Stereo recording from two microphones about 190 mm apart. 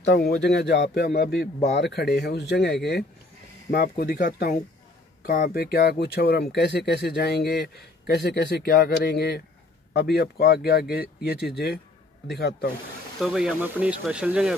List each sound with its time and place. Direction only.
0.0 s speech: 65° left (ahead or behind)
13.2 s speech: 5° right (ahead or behind)